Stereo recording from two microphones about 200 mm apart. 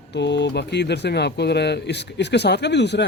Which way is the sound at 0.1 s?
60° left (ahead or behind).